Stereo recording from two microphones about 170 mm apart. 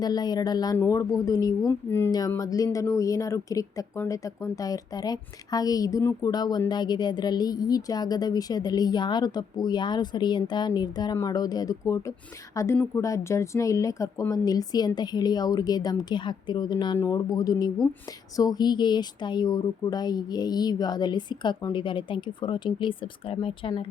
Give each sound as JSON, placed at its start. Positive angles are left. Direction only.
{"t": 0.0, "sound": "a woman's voice", "side_deg": 25}